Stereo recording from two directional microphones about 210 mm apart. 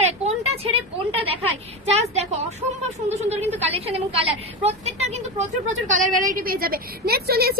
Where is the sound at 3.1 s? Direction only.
30° right (ahead or behind).